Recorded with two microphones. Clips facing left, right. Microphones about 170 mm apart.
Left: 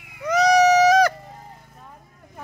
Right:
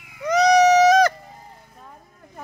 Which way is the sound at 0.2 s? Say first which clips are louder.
Right 1 dB; 5° left (ahead or behind).